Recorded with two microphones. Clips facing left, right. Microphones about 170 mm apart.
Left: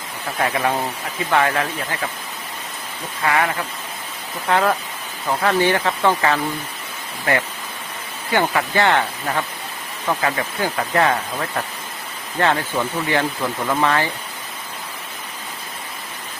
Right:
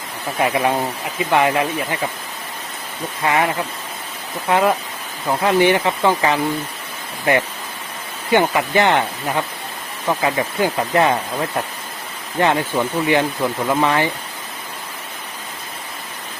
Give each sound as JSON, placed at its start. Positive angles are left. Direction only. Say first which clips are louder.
{"t": 0.3, "sound": "speech", "louder": "right 3 dB", "side_deg": -15}
{"t": 3.2, "sound": "speech", "louder": "right 2 dB", "side_deg": -20}
{"t": 8.3, "sound": "speech", "louder": "right 3 dB", "side_deg": -20}